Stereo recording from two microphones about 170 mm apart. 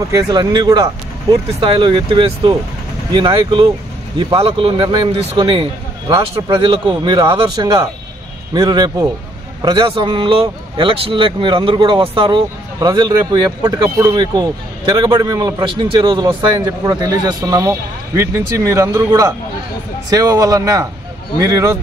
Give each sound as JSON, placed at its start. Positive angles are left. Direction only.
{"t": 0.1, "sound": "a man's voice", "side_deg": -25}